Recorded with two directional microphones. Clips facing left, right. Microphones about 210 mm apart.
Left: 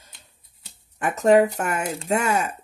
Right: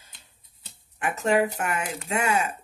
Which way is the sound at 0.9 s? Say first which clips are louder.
Left 6 dB; 40° left (ahead or behind).